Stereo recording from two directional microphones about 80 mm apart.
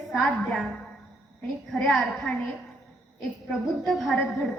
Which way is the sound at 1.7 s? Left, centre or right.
Centre.